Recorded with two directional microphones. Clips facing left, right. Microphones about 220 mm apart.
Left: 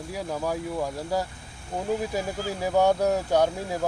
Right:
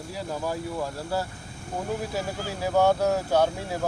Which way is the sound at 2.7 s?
15° left (ahead or behind).